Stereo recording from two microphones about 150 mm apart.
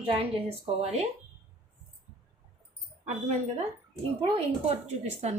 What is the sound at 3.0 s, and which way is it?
A woman's voice, 55° right (ahead or behind).